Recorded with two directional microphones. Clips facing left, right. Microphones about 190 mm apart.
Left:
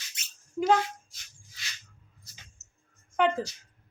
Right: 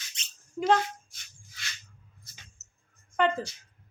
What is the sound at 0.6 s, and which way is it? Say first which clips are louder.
Speech: left 1 dB; 5° left (ahead or behind).